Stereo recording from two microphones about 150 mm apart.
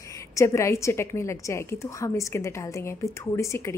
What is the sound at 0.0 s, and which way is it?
A woman's voice, 20° left (ahead or behind).